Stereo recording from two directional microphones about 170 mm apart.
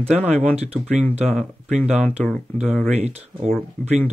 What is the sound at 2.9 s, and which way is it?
Speech, 40° right (ahead or behind).